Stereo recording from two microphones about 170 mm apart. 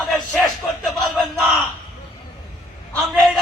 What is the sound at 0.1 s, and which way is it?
Crowd, centre (ahead or behind).